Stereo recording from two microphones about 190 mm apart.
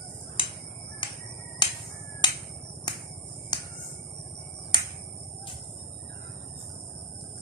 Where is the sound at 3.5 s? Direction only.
20° left (ahead or behind).